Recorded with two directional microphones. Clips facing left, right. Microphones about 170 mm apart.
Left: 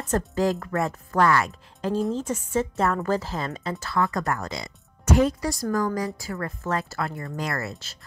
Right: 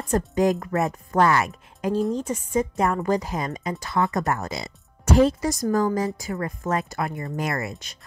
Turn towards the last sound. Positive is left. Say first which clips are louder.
# right 2 dB
turn(degrees=-20)  # may be behind; listen again after turning